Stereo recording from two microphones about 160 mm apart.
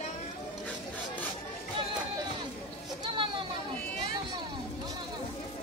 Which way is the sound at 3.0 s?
30° right (ahead or behind).